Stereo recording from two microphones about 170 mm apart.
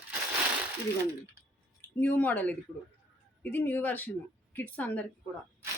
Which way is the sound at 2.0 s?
10° left (ahead or behind).